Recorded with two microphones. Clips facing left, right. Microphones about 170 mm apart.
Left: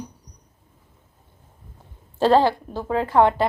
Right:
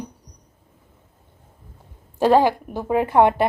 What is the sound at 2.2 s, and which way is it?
A woman's voice, 15° right (ahead or behind).